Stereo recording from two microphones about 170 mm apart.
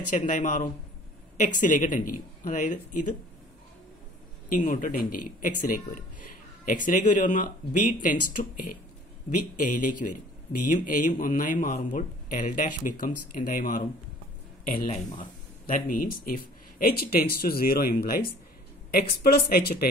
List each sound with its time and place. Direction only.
0.3 s speech: 50° left (ahead or behind)
4.5 s speech: 50° left (ahead or behind)